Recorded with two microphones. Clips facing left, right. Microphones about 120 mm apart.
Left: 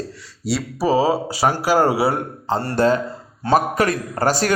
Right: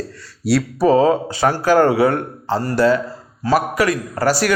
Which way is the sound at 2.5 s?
30° left (ahead or behind).